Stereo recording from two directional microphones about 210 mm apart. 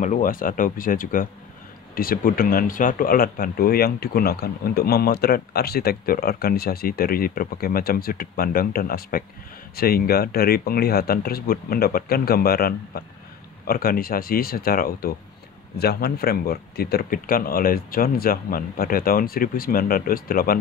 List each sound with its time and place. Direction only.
0.0 s speech: 40° left (ahead or behind)